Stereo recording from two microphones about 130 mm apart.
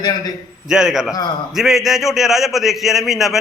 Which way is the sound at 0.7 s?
5° right (ahead or behind).